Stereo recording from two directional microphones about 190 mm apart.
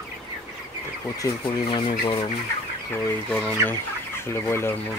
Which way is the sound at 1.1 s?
20° left (ahead or behind).